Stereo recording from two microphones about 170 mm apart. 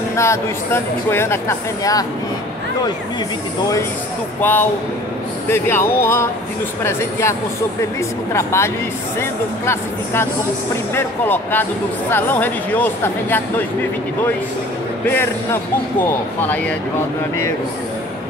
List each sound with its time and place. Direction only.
0.1 s speech: 15° left (ahead or behind)
4.4 s speech: 10° left (ahead or behind)
15.0 s speech: 10° left (ahead or behind)